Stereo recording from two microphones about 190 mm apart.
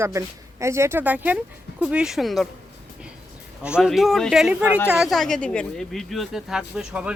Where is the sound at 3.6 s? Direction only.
5° right (ahead or behind).